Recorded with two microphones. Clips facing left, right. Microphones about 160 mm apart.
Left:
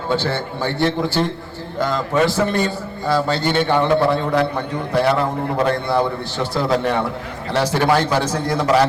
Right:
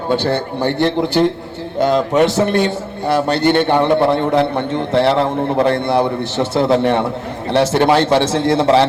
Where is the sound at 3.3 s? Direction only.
60° right (ahead or behind).